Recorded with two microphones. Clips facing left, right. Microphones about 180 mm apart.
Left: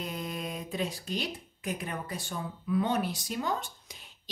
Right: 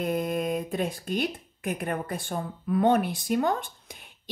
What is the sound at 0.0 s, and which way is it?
Speech, 55° right (ahead or behind).